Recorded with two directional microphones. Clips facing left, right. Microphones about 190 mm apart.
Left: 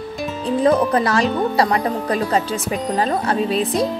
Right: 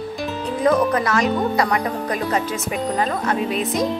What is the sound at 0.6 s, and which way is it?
Speech, 30° left (ahead or behind).